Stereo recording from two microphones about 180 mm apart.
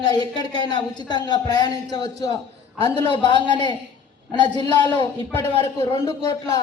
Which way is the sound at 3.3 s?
25° left (ahead or behind).